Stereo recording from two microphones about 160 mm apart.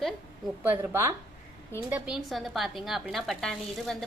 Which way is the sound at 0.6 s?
15° right (ahead or behind).